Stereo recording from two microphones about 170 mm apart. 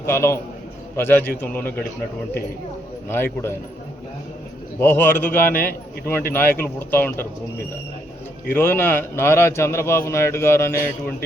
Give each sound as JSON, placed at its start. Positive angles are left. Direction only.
{"t": 0.0, "sound": "a man's voice", "side_deg": 15}
{"t": 3.1, "sound": "a man's voice", "side_deg": 15}
{"t": 4.8, "sound": "a man's voice", "side_deg": 10}
{"t": 8.5, "sound": "a man's voice", "side_deg": 10}